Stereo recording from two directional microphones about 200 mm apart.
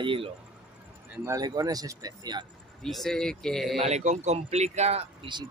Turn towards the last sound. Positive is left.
turn(degrees=-30)  # may be behind; listen again after turning